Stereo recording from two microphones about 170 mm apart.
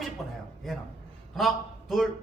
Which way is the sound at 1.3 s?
Centre (ahead or behind).